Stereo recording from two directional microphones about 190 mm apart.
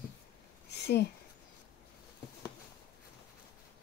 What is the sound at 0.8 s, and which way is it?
Speech, 60° left (ahead or behind).